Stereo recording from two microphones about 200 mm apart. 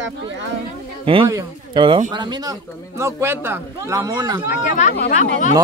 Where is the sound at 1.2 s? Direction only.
20° right (ahead or behind).